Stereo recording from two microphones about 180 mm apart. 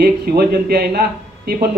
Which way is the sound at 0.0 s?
60° right (ahead or behind).